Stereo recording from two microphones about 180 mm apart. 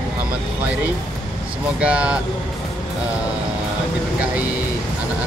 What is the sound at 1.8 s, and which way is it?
Vehicle, 5° right (ahead or behind).